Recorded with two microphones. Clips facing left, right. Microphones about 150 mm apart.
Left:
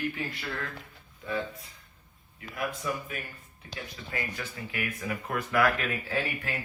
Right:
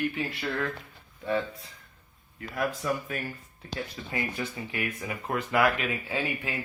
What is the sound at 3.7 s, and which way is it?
Speech, 25° right (ahead or behind).